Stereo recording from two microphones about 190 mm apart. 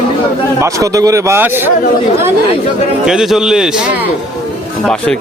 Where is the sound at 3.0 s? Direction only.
5° right (ahead or behind).